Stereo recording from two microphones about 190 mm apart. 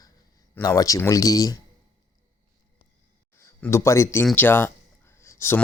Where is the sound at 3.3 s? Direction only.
15° left (ahead or behind).